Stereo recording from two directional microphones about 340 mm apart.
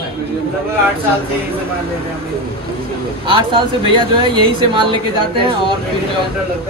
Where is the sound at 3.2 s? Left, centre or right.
Centre.